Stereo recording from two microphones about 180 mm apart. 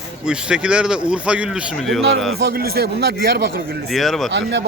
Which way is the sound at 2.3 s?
60° right (ahead or behind).